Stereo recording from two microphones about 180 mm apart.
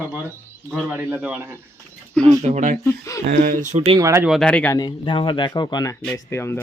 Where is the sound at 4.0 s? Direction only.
15° right (ahead or behind).